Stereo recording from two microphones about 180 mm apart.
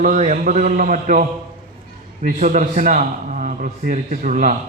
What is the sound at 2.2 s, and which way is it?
A man's voice, 45° right (ahead or behind).